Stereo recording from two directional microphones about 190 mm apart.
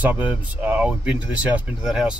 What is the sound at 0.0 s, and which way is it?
Speech, 10° right (ahead or behind).